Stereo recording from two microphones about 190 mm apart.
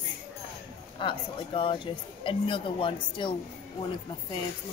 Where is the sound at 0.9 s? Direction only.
25° left (ahead or behind).